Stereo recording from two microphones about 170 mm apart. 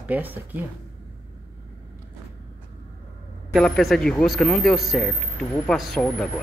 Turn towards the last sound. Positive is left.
turn(degrees=5)  # may be behind; listen again after turning